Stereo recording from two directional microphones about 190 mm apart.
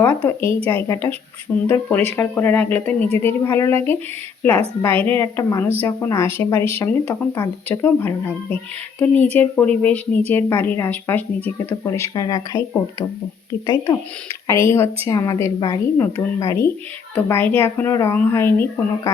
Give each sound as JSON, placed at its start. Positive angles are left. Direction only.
{"t": 0.0, "sound": "speech", "side_deg": 10}